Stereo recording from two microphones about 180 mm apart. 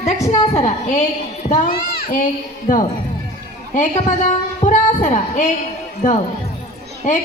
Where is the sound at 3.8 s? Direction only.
45° left (ahead or behind).